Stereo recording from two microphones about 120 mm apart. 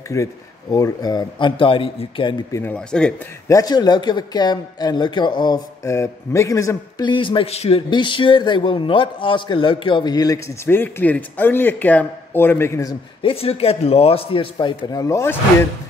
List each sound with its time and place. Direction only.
0.1 s a man's voice: 30° left (ahead or behind); by 2.3 s 45° left (ahead or behind)
2.5 s a man's voice: 15° left (ahead or behind)
3.4 s a man's voice: 30° left (ahead or behind)
5.9 s a man's voice: 25° left (ahead or behind)
7.1 s a man's voice: 45° left (ahead or behind)
7.9 s a man's voice: 45° left (ahead or behind); by 12.9 s 20° left (ahead or behind)
13.2 s a man's voice: 55° left (ahead or behind); by 15.3 s 25° left (ahead or behind)